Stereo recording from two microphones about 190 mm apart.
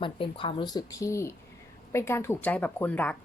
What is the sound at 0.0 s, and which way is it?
Speech, 25° left (ahead or behind).